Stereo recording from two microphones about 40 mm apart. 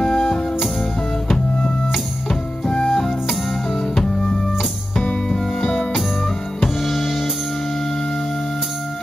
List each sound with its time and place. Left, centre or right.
0.0 s music: centre
2.6 s music: left
2.9 s music: centre